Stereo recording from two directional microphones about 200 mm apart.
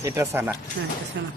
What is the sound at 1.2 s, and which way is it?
Speech, 65° right (ahead or behind).